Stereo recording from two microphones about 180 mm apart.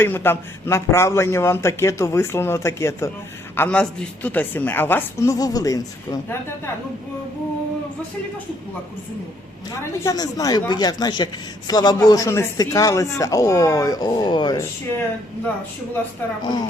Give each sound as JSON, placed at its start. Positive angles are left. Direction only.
{"t": 0.0, "sound": "a man's voice", "side_deg": 10}
{"t": 9.8, "sound": "a man's voice", "side_deg": 15}